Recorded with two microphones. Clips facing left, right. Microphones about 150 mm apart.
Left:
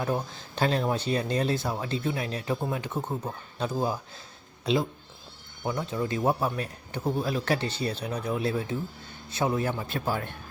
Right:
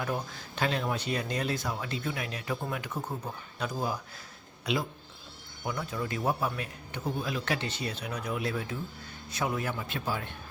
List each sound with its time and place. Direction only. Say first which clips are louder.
0.0 s speech: left 4 dB; 25° left (ahead or behind)